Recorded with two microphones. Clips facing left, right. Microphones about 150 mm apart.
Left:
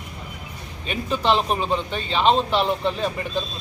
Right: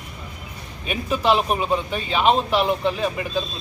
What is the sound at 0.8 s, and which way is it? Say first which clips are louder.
A man's voice: right 1 dB; 5° right (ahead or behind).